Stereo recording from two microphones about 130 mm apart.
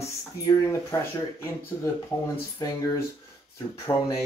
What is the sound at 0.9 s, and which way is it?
Speech, 20° left (ahead or behind).